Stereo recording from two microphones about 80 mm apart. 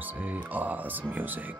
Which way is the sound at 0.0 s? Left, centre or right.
Right.